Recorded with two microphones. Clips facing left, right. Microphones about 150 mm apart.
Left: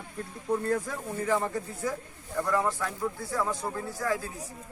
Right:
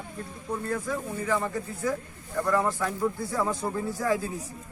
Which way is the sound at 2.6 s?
10° right (ahead or behind).